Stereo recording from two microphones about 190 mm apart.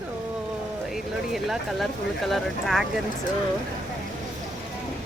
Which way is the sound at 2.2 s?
Centre (ahead or behind).